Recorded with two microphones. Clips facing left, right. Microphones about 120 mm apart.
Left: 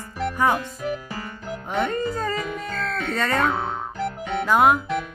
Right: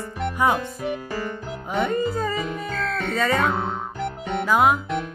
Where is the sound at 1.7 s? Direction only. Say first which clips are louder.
Right 1 dB; 5° right (ahead or behind).